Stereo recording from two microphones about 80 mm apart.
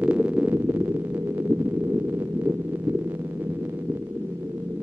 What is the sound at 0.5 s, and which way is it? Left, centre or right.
Heart murmur, right.